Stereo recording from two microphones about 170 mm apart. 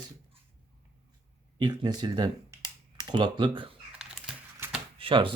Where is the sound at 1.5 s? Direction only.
25° right (ahead or behind).